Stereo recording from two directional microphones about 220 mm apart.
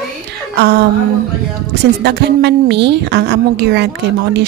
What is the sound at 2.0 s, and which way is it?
A woman's voice, 45° right (ahead or behind).